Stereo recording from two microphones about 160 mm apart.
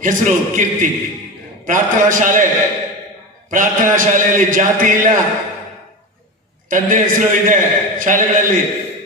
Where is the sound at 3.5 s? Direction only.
55° right (ahead or behind).